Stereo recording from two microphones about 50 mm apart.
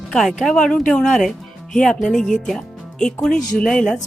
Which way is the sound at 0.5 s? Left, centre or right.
Centre.